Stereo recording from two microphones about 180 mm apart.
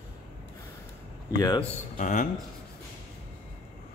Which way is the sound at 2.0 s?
45° left (ahead or behind).